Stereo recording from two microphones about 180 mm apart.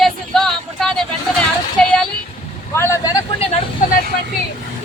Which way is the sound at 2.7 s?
15° left (ahead or behind).